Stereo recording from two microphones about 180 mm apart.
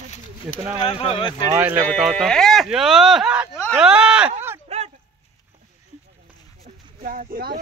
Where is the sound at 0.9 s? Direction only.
30° left (ahead or behind).